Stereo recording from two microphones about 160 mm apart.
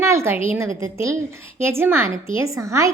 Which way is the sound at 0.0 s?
15° right (ahead or behind).